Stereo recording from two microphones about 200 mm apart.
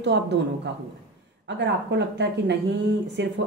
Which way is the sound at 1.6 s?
60° right (ahead or behind).